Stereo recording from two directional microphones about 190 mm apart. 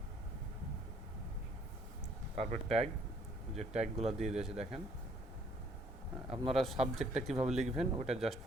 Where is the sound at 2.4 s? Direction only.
35° right (ahead or behind).